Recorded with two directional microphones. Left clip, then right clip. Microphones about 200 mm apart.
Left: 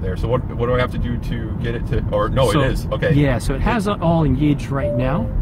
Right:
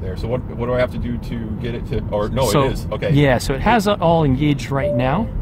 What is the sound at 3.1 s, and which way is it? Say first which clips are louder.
Speech: right 4 dB; 35° right (ahead or behind).